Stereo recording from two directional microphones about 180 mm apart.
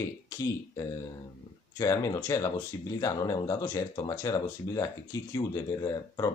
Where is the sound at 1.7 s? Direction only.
20° left (ahead or behind).